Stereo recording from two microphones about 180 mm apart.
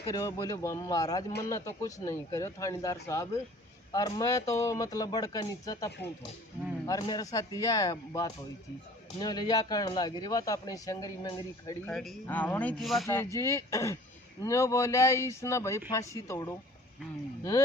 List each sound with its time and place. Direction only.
0.0 s a man's voice: 20° left (ahead or behind)
11.9 s a man's voice: 5° left (ahead or behind)
13.1 s speech: 15° left (ahead or behind)